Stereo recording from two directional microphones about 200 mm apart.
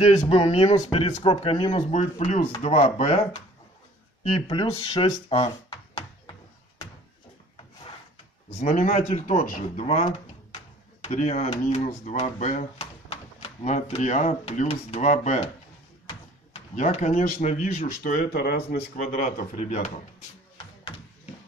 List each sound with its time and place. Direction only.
0.0 s speech: 35° left (ahead or behind)
4.3 s speech: 25° left (ahead or behind)
8.5 s speech: 35° left (ahead or behind); by 18.8 s 50° left (ahead or behind)
19.1 s speech: 40° left (ahead or behind)